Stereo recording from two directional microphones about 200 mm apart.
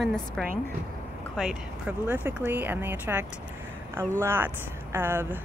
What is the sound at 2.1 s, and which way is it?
Speech, 10° right (ahead or behind).